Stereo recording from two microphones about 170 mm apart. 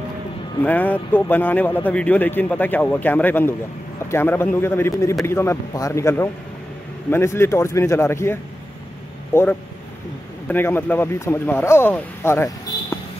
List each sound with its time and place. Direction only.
0.6 s a man's voice: 10° left (ahead or behind)